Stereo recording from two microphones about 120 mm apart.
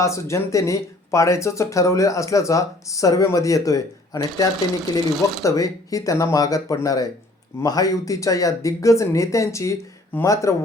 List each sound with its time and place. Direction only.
0.0 s speech: 25° left (ahead or behind)